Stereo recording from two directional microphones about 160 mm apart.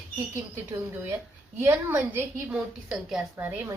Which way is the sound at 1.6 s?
15° right (ahead or behind).